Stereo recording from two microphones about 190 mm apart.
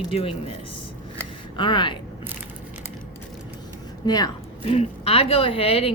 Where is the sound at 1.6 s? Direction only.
25° left (ahead or behind).